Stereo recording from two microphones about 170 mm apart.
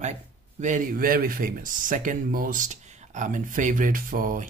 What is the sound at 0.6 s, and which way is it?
Speech, 50° right (ahead or behind).